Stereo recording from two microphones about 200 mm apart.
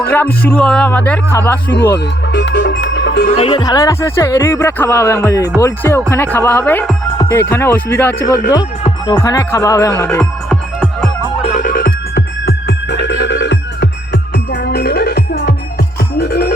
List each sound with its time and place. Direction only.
0.1 s speech: 10° left (ahead or behind)
2.3 s music: 60° left (ahead or behind)
3.3 s speech: 30° left (ahead or behind); by 10.2 s 10° left (ahead or behind)
10.5 s music: 5° right (ahead or behind)
11.4 s music: 40° left (ahead or behind)